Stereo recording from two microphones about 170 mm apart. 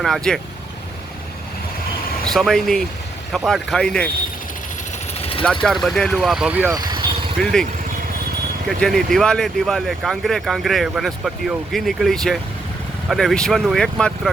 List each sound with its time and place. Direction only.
0.0 s speech: centre (ahead or behind)
2.2 s speech: centre (ahead or behind)
5.6 s speech: centre (ahead or behind)
6.7 s vehicle: 25° right (ahead or behind)
7.4 s speech: 5° left (ahead or behind)
8.6 s speech: centre (ahead or behind)